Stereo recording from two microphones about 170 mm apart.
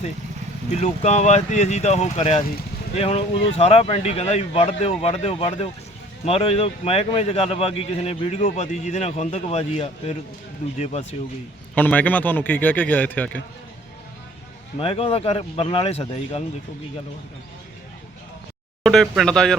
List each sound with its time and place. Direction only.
0.7 s speech: 40° left (ahead or behind)
10.6 s speech: 50° left (ahead or behind)
11.7 s a man's voice: 10° left (ahead or behind)
14.8 s speech: 35° left (ahead or behind)
18.8 s speech: centre (ahead or behind)